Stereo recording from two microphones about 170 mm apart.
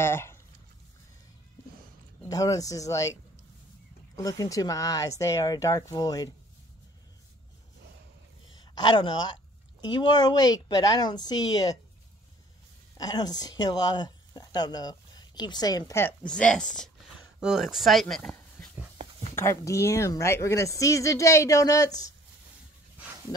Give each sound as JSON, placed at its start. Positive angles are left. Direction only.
{"t": 0.0, "sound": "speech", "side_deg": 15}
{"t": 2.2, "sound": "a woman's voice", "side_deg": 20}
{"t": 4.2, "sound": "a woman's voice", "side_deg": 20}
{"t": 8.5, "sound": "a sound", "side_deg": 25}
{"t": 9.9, "sound": "a woman's voice", "side_deg": 25}
{"t": 12.9, "sound": "speech", "side_deg": 20}
{"t": 19.3, "sound": "a woman's voice", "side_deg": 15}